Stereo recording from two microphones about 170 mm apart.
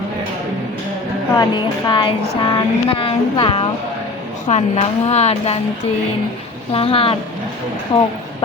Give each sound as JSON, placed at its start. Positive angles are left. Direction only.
{"t": 1.4, "sound": "a woman's voice", "side_deg": 25}
{"t": 4.4, "sound": "a woman's voice", "side_deg": 40}
{"t": 6.7, "sound": "a woman's voice", "side_deg": 35}